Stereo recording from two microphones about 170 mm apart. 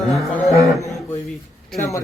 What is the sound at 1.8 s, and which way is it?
Speech, 15° left (ahead or behind).